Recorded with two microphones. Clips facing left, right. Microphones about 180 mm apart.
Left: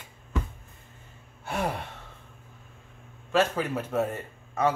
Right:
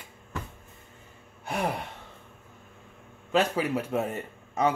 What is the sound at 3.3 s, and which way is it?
A man's voice, 15° right (ahead or behind).